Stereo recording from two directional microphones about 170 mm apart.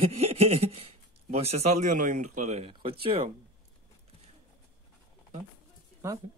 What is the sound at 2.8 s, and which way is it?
Speech, 30° right (ahead or behind).